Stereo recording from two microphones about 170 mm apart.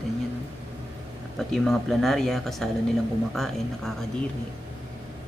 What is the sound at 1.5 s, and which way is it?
Speech, centre (ahead or behind).